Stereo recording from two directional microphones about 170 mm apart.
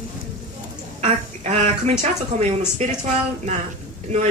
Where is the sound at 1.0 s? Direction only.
40° right (ahead or behind).